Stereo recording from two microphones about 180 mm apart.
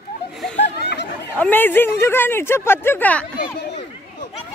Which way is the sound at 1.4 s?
10° left (ahead or behind).